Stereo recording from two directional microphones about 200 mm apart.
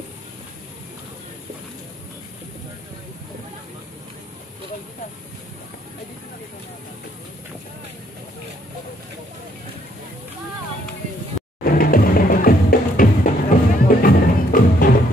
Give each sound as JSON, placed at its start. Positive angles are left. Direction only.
{"t": 11.6, "sound": "music", "side_deg": 45}